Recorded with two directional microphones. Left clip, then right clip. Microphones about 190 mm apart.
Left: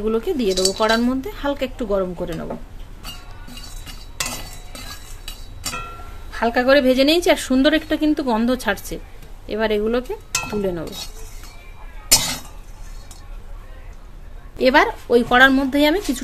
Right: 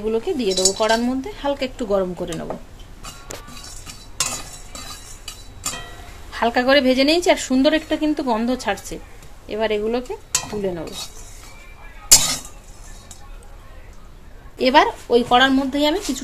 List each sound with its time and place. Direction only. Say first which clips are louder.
0.0 s a woman's voice: left 1 dB; 20° left (ahead or behind)
6.3 s a woman's voice: left 1 dB; 15° left (ahead or behind)
12.1 s a sound: right 2 dB; centre (ahead or behind)
14.6 s a woman's voice: even; 25° left (ahead or behind)